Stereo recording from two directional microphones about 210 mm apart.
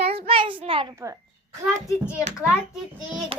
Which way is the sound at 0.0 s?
25° right (ahead or behind).